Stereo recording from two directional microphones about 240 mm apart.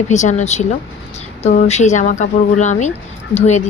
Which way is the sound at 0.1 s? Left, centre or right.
Left.